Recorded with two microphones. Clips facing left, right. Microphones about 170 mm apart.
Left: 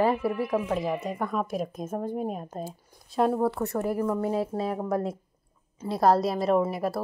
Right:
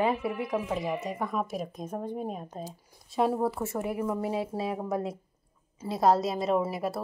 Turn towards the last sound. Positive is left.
turn(degrees=0)  # may be behind; listen again after turning